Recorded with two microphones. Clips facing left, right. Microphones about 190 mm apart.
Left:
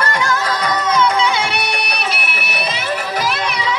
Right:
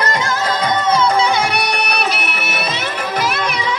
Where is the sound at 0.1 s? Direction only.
20° right (ahead or behind).